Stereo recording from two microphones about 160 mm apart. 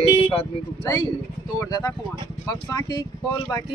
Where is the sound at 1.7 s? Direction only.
25° left (ahead or behind).